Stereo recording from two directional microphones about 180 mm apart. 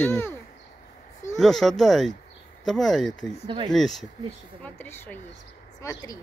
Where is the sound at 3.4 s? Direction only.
25° right (ahead or behind).